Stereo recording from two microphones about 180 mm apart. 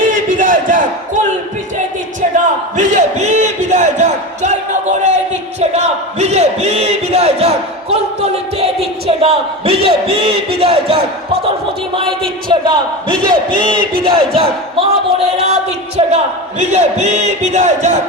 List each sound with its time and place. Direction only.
0.1 s crowd: 50° right (ahead or behind)
2.7 s a sound: 40° right (ahead or behind)
9.0 s a man's voice: 35° right (ahead or behind)
13.1 s speech: 50° right (ahead or behind)
13.5 s a man's voice: 30° right (ahead or behind)